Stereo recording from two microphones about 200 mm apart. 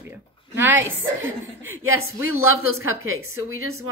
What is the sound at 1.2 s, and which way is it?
Speech, 85° right.